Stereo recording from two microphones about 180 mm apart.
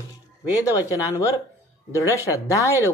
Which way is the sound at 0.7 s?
15° left (ahead or behind).